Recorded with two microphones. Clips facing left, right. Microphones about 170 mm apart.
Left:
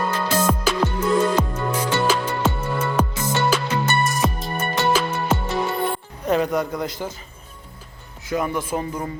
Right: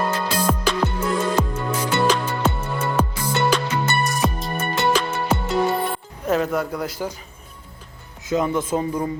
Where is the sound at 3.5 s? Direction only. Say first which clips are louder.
Even; 5° left (ahead or behind).